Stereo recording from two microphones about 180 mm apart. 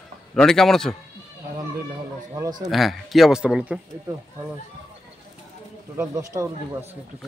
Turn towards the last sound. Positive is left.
turn(degrees=-15)  # may be behind; listen again after turning